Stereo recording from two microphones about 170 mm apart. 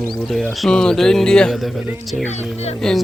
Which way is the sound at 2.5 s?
40° left (ahead or behind).